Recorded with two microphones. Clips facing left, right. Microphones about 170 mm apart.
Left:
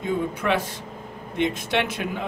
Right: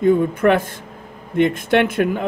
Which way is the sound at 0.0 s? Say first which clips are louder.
Right 10 dB; 50° right (ahead or behind).